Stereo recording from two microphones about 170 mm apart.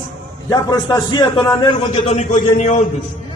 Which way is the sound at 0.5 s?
20° left (ahead or behind).